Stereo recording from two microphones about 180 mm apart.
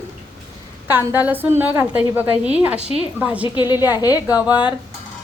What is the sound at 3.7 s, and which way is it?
Speech, 20° left (ahead or behind).